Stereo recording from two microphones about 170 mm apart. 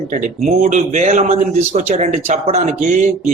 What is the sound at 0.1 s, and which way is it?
Speech, 50° right (ahead or behind).